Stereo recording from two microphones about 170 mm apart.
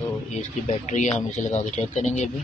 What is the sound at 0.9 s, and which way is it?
Speech, 45° left (ahead or behind).